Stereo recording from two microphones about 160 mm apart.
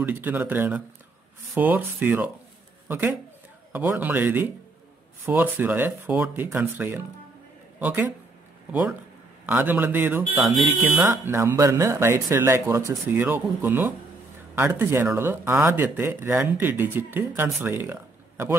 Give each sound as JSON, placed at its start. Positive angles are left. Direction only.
{"t": 0.0, "sound": "speech", "side_deg": -10}
{"t": 3.7, "sound": "speech", "side_deg": -15}
{"t": 9.5, "sound": "speech", "side_deg": -10}